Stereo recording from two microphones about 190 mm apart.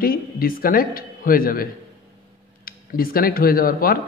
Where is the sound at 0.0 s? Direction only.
50° left (ahead or behind).